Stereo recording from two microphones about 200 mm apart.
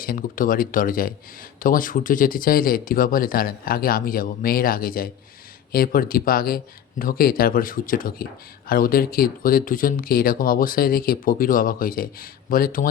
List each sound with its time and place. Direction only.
0.0 s speech: 45° left (ahead or behind)